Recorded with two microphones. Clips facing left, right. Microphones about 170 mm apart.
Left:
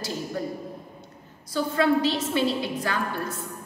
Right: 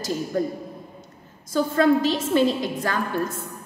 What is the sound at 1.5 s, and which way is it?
A woman's voice, 45° right (ahead or behind).